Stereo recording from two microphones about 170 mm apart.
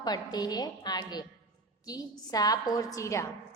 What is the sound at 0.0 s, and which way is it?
A woman's voice, 25° left (ahead or behind).